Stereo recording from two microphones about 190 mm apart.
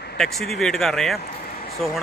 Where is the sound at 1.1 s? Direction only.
55° left (ahead or behind).